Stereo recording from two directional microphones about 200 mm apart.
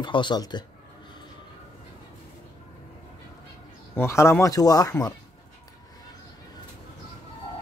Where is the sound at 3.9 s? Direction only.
15° left (ahead or behind).